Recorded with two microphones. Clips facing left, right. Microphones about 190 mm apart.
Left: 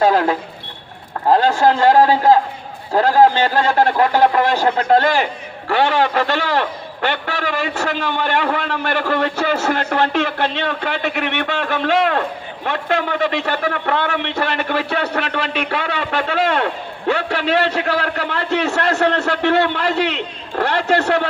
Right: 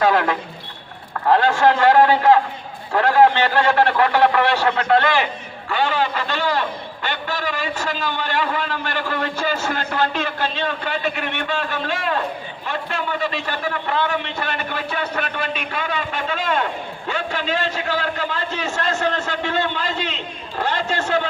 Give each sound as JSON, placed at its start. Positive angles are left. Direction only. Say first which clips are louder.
{"t": 0.0, "sound": "a man's voice", "louder": "left 3 dB", "side_deg": 35}
{"t": 5.7, "sound": "a man's voice", "louder": "left 5 dB", "side_deg": 75}